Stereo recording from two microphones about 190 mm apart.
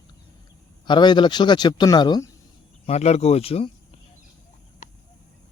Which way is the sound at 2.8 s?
35° left (ahead or behind).